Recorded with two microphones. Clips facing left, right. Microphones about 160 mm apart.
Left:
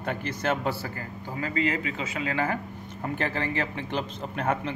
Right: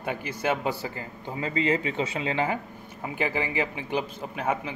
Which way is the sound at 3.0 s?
10° right (ahead or behind).